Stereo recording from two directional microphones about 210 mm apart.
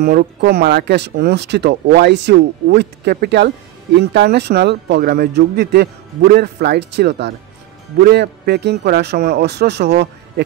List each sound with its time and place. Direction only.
0.0 s speech: 45° right (ahead or behind)